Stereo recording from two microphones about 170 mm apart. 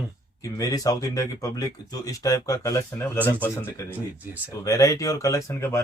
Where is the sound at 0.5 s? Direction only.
20° left (ahead or behind).